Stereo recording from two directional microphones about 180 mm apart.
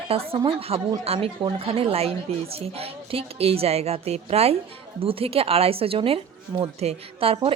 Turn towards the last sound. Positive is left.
turn(degrees=-30)  # may be behind; listen again after turning